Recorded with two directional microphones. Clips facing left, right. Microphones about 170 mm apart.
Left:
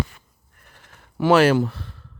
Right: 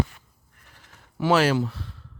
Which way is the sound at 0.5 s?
55° left (ahead or behind).